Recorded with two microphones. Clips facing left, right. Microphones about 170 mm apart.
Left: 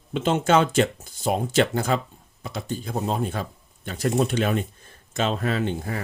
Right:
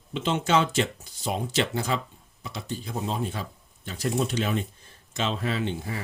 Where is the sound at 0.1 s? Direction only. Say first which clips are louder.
Left 4 dB; 50° left (ahead or behind).